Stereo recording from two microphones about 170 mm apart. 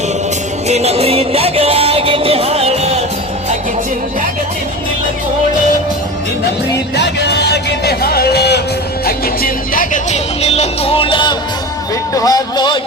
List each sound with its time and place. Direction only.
0.7 s music: 40° right (ahead or behind)
6.9 s music: 85° left
9.0 s music: 60° left (ahead or behind); by 11.3 s 30° left (ahead or behind)
12.1 s speech: 20° left (ahead or behind)